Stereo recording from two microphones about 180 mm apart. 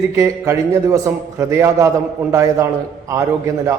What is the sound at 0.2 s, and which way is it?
A man's voice, 15° right (ahead or behind).